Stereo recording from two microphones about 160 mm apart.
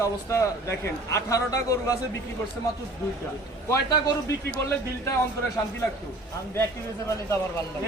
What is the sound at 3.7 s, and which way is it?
Speech, 20° left (ahead or behind).